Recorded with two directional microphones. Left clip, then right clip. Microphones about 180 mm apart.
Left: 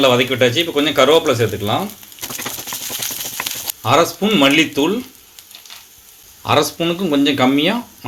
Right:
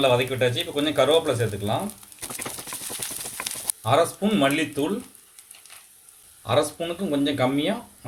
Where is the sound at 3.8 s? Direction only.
40° left (ahead or behind).